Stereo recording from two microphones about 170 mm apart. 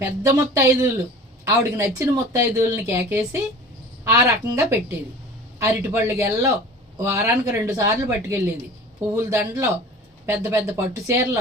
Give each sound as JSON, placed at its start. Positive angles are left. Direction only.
{"t": 0.0, "sound": "speech", "side_deg": -15}